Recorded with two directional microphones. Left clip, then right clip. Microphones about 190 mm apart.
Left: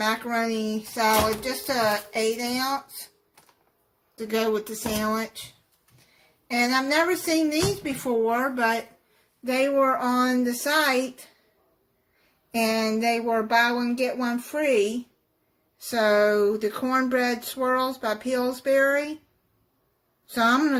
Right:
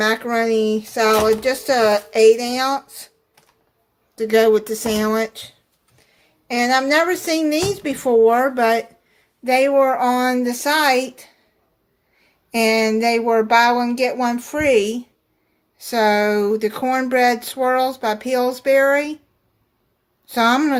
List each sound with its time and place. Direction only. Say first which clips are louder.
0.0 s speech: right 7 dB; 50° right (ahead or behind)
4.1 s speech: right 11 dB; 45° right (ahead or behind)
6.5 s speech: right 7 dB; 50° right (ahead or behind)
12.5 s speech: right 8 dB; 40° right (ahead or behind)
15.9 s speech: right 4 dB; 40° right (ahead or behind)
20.3 s speech: right 5 dB; 40° right (ahead or behind)